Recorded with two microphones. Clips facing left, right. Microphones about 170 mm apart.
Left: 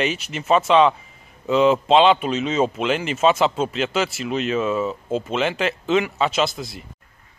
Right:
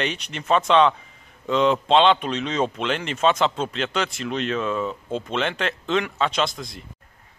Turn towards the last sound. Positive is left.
turn(degrees=5)  # may be behind; listen again after turning